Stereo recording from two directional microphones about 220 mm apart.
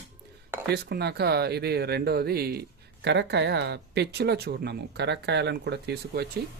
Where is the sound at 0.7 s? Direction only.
45° right (ahead or behind).